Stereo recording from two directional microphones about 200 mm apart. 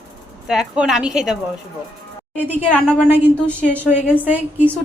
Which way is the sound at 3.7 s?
10° right (ahead or behind).